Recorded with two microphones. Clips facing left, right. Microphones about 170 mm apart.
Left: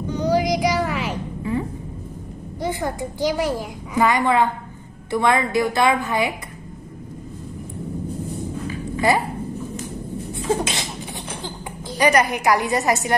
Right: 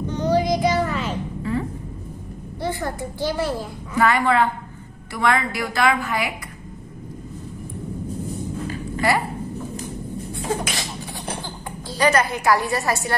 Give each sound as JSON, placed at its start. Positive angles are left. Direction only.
{"t": 0.1, "sound": "child singing", "side_deg": 10}
{"t": 0.5, "sound": "a sound", "side_deg": 10}
{"t": 2.6, "sound": "a child's voice", "side_deg": 20}
{"t": 10.3, "sound": "sneeze", "side_deg": 25}
{"t": 12.0, "sound": "a woman's voice", "side_deg": 15}